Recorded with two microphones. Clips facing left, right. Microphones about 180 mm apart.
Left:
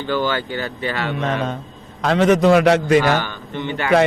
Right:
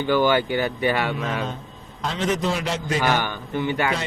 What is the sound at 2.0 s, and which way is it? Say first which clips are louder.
A man's voice: left 9 dB; 65° left (ahead or behind).